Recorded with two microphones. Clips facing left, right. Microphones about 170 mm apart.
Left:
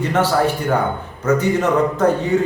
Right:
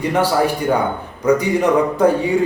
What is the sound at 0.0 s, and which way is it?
A man's voice, 10° right (ahead or behind).